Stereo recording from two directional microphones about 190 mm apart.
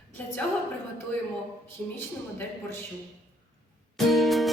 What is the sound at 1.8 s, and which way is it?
Speech, 5° left (ahead or behind).